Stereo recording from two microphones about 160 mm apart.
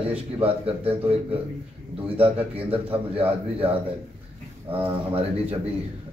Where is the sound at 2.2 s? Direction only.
35° right (ahead or behind).